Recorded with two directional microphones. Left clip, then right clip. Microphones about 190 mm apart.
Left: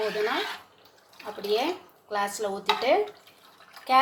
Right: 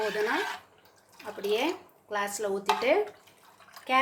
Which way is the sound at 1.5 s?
15° right (ahead or behind).